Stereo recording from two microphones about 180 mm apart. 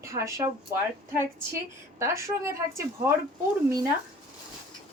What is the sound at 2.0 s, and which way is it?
Speech, 15° right (ahead or behind).